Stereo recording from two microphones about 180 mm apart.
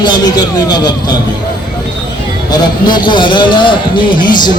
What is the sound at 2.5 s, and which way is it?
A man's voice, 25° left (ahead or behind).